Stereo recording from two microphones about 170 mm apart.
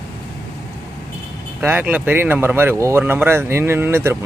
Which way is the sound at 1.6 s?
10° right (ahead or behind).